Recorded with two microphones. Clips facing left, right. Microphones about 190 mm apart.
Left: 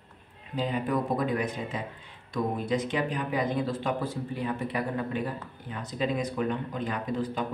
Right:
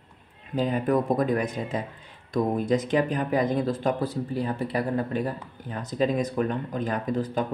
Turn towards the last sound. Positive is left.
turn(degrees=-45)  # may be behind; listen again after turning